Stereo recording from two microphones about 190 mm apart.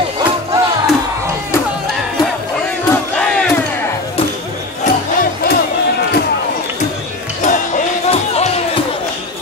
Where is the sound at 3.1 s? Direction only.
5° left (ahead or behind).